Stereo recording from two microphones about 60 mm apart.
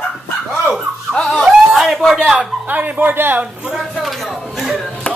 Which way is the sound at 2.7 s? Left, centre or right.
Right.